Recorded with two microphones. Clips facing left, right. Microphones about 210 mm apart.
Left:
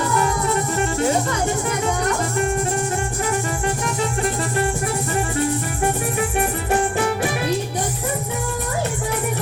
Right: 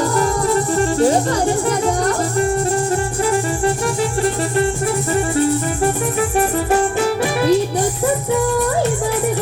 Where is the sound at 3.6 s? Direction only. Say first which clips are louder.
Right 5 dB; 35° right (ahead or behind).